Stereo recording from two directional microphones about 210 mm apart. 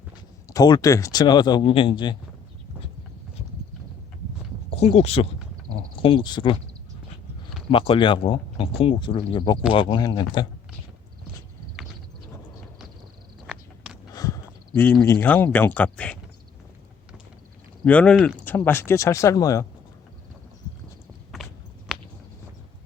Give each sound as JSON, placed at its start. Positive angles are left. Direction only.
{"t": 0.4, "sound": "speech", "side_deg": 15}
{"t": 4.7, "sound": "speech", "side_deg": 30}
{"t": 7.7, "sound": "speech", "side_deg": 25}
{"t": 13.5, "sound": "a sound", "side_deg": -5}
{"t": 14.2, "sound": "speech", "side_deg": 15}
{"t": 17.8, "sound": "speech", "side_deg": 5}
{"t": 21.4, "sound": "walk", "side_deg": 0}
{"t": 21.9, "sound": "a sound", "side_deg": -5}